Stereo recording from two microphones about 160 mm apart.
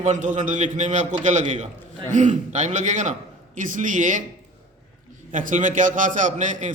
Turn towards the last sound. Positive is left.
turn(degrees=-50)  # may be behind; listen again after turning